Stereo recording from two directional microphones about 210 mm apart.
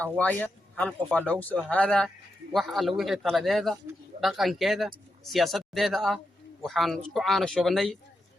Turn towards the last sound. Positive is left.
turn(degrees=0)  # may be behind; listen again after turning